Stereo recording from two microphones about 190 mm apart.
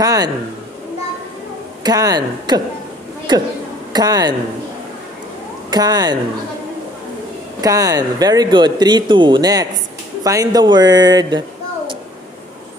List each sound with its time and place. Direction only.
0.0 s speech: 20° right (ahead or behind)
1.8 s speech: 20° right (ahead or behind)
5.7 s speech: 20° right (ahead or behind)
7.6 s speech: 20° right (ahead or behind)